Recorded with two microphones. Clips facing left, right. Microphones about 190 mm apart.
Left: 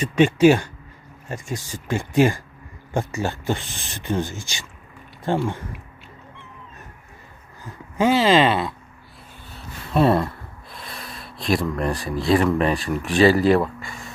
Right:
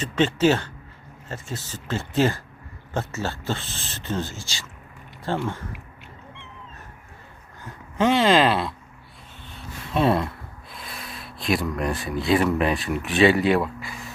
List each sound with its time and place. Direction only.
0.0 s speech: 10° left (ahead or behind)
7.9 s speech: 5° left (ahead or behind)
9.6 s gasp: centre (ahead or behind)
11.6 s speech: centre (ahead or behind)